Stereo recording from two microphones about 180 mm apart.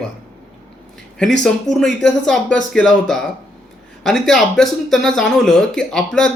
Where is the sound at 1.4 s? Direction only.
Centre (ahead or behind).